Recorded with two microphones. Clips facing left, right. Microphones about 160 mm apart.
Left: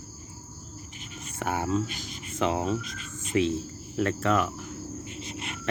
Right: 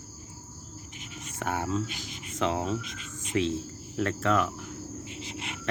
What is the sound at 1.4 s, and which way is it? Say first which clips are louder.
Speech: left 2 dB; 5° left (ahead or behind).